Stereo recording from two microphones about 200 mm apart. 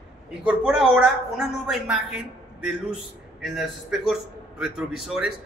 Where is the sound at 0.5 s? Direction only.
5° right (ahead or behind).